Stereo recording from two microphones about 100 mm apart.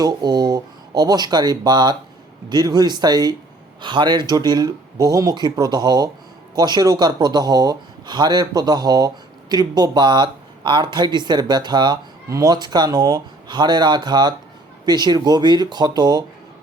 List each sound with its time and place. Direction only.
0.0 s speech: 45° right (ahead or behind)